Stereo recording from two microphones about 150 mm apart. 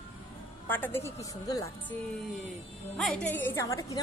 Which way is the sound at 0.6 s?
10° left (ahead or behind).